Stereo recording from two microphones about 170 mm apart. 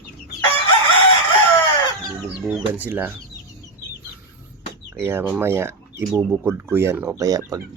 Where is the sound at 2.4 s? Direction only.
5° right (ahead or behind).